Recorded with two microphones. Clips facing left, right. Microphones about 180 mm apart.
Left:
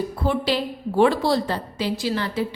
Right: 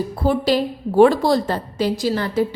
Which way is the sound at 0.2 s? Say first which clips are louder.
Right 5 dB; 40° right (ahead or behind).